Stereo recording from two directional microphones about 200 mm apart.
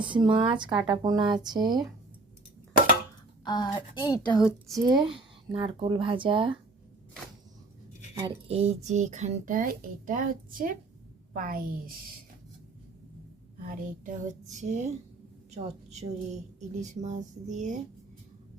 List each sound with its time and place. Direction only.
0.0 s speech: 25° right (ahead or behind)
3.4 s speech: 20° left (ahead or behind)
4.3 s speech: centre (ahead or behind)
4.9 s speech: 20° right (ahead or behind)
8.2 s a woman's voice: 30° right (ahead or behind); by 11.9 s 45° right (ahead or behind)
13.6 s speech: 40° right (ahead or behind)